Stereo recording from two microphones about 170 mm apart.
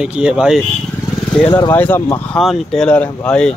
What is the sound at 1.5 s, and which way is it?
Speech, 20° left (ahead or behind).